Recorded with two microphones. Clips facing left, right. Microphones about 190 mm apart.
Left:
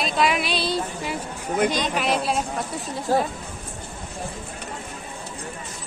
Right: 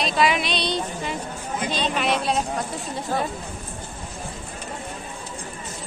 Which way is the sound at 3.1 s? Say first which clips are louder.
Left 5 dB; 35° left (ahead or behind).